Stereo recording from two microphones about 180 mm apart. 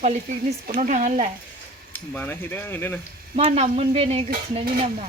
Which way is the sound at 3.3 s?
40° right (ahead or behind).